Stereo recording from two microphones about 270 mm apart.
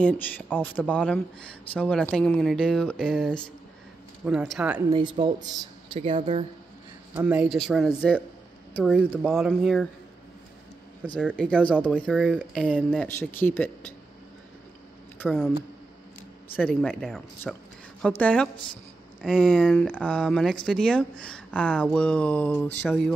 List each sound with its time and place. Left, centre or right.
0.0 s speech: centre
4.7 s speech: centre
7.2 s speech: centre
11.1 s speech: centre
13.2 s speech: centre
15.1 s speech: centre
16.5 s speech: centre